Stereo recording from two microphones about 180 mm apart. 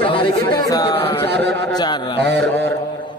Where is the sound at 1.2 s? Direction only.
70° right (ahead or behind).